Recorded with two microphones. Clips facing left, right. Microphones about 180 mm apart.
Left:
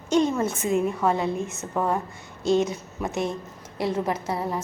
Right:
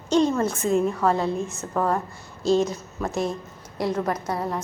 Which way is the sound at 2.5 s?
20° left (ahead or behind).